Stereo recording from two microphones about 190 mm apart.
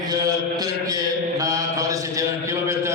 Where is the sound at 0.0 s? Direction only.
20° right (ahead or behind).